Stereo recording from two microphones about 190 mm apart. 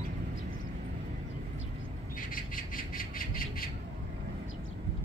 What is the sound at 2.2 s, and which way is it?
Squawk, 45° left (ahead or behind).